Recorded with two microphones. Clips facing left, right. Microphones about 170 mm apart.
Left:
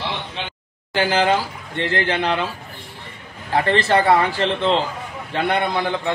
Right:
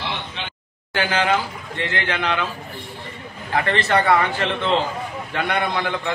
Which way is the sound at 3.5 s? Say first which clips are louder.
Left 2 dB; 30° left (ahead or behind).